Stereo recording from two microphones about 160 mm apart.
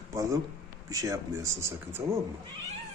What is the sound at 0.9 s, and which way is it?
Speech, 20° right (ahead or behind).